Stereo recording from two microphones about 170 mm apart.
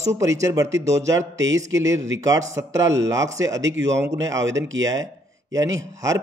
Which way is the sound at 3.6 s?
90° right.